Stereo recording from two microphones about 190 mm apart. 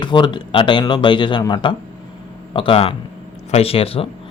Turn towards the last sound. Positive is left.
turn(degrees=30)  # may be behind; listen again after turning